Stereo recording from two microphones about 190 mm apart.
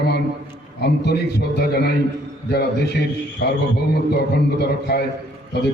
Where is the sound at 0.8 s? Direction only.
60° left (ahead or behind).